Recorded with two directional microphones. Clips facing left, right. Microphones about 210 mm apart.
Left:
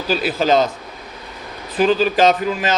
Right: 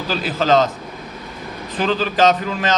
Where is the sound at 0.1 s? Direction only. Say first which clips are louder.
Left 1 dB; 10° left (ahead or behind).